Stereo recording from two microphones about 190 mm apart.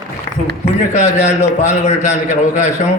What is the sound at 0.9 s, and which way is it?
A man's voice, 40° left (ahead or behind).